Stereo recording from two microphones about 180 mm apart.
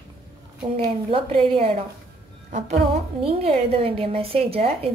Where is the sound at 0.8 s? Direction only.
30° right (ahead or behind).